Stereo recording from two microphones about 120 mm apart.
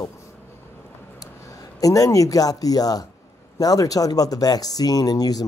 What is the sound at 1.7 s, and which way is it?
Speech, 30° left (ahead or behind).